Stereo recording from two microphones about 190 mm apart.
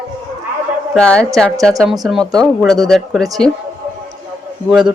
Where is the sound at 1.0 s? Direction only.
5° left (ahead or behind).